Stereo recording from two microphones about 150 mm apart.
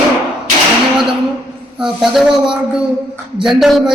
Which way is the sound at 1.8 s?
Centre (ahead or behind).